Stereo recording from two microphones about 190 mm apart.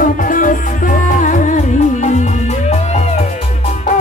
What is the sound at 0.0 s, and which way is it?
Music, 45° left (ahead or behind).